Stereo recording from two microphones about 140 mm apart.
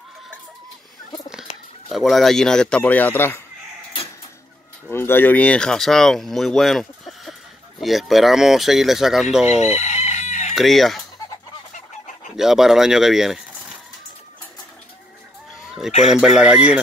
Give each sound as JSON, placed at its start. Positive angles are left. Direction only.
{"t": 1.9, "sound": "speech", "side_deg": 0}
{"t": 4.9, "sound": "speech", "side_deg": 15}
{"t": 9.5, "sound": "chicken", "side_deg": 50}
{"t": 10.5, "sound": "speech", "side_deg": 0}
{"t": 12.4, "sound": "speech", "side_deg": -5}
{"t": 16.1, "sound": "speech", "side_deg": -5}